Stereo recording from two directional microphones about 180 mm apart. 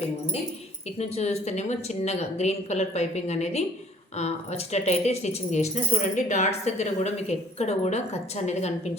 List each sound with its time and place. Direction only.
0.9 s speech: 35° left (ahead or behind)